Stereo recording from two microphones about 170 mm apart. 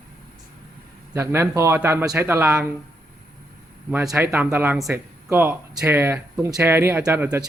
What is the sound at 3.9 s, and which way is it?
Speech, centre (ahead or behind).